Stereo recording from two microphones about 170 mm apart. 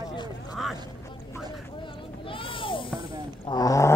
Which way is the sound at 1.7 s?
30° left (ahead or behind).